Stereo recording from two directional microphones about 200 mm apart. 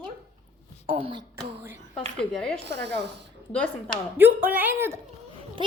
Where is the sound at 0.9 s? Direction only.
25° right (ahead or behind).